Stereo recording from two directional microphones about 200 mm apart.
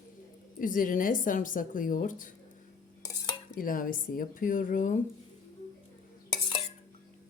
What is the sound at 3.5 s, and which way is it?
A woman's voice, 45° left (ahead or behind).